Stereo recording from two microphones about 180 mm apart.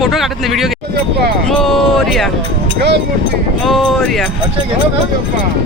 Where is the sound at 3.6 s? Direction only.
Centre (ahead or behind).